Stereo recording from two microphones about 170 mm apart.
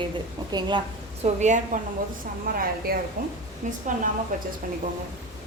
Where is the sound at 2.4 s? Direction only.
60° right (ahead or behind).